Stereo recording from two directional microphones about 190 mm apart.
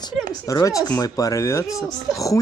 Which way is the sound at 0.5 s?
20° left (ahead or behind).